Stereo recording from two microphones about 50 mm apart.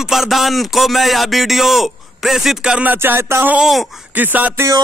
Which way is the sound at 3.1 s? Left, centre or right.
Right.